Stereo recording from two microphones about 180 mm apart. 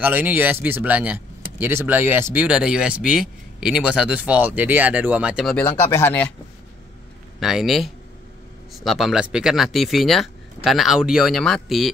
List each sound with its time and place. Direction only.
0.0 s speech: 10° right (ahead or behind)
5.9 s speech: 15° left (ahead or behind)
7.3 s speech: centre (ahead or behind)